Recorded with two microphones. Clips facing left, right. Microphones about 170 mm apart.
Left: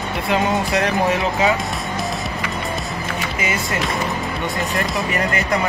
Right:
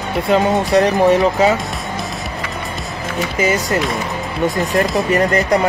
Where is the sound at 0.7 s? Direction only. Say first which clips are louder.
Right 10 dB; 40° right (ahead or behind).